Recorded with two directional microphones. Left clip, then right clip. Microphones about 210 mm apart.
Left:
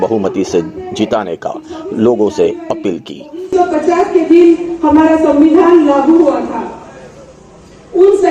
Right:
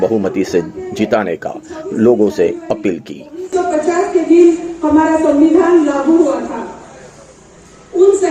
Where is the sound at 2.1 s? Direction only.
15° left (ahead or behind).